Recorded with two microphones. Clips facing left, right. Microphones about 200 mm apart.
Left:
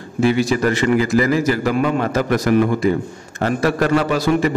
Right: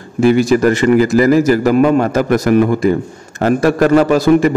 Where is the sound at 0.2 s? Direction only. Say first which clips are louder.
Right 6 dB; 45° right (ahead or behind).